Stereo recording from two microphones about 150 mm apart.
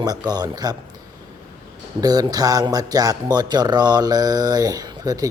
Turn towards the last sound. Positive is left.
turn(degrees=-25)  # may be behind; listen again after turning